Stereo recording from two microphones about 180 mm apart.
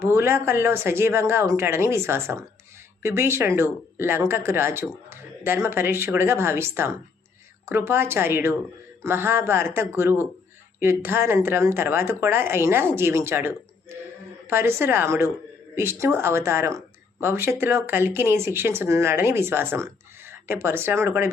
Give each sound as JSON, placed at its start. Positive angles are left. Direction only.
{"t": 0.0, "sound": "speech", "side_deg": -15}
{"t": 14.5, "sound": "speech", "side_deg": -15}